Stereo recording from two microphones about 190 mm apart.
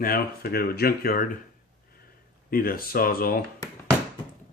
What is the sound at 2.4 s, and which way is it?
Speech, 50° left (ahead or behind).